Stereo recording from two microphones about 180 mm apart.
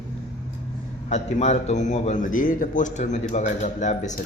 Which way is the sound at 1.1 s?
40° left (ahead or behind).